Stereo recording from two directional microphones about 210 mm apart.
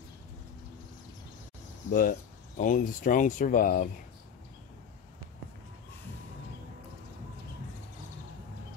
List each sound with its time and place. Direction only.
1.9 s speech: 40° left (ahead or behind)